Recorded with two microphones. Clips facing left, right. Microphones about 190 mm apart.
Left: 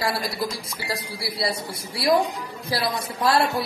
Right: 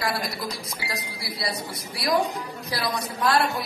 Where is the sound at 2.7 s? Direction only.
30° left (ahead or behind).